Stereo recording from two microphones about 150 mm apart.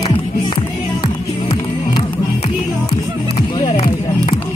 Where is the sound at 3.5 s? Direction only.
35° left (ahead or behind).